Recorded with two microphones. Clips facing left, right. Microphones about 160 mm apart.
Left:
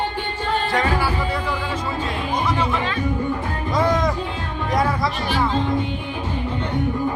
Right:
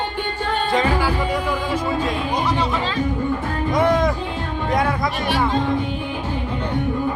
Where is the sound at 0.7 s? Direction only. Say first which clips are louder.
Right 4 dB; 20° right (ahead or behind).